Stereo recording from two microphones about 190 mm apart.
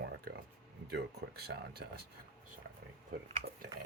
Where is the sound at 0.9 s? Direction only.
60° right (ahead or behind).